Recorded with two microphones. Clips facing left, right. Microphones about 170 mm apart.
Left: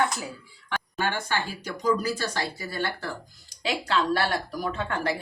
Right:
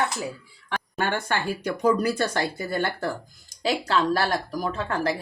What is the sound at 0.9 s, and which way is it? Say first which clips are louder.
Speech: right 2 dB; 50° right (ahead or behind).